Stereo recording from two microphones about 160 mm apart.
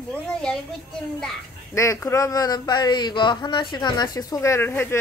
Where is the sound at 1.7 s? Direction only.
20° left (ahead or behind).